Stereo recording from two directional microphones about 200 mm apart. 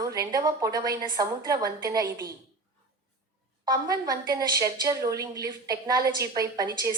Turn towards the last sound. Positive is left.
turn(degrees=-15)  # may be behind; listen again after turning